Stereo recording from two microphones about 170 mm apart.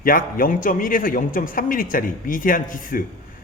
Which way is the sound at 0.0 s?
55° left (ahead or behind).